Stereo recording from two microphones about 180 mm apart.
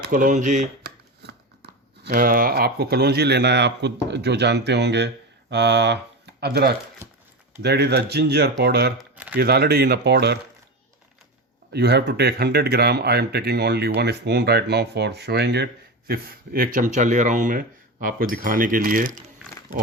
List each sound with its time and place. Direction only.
0.0 s speech: 45° right (ahead or behind)
0.8 s speech: 60° right (ahead or behind)
9.0 s a sound: 5° right (ahead or behind)
9.3 s speech: 60° right (ahead or behind)
11.7 s speech: 65° right (ahead or behind); by 19.2 s 50° right (ahead or behind)